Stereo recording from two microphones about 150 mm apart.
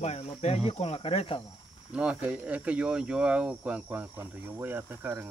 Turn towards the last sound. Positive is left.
turn(degrees=-15)  # may be behind; listen again after turning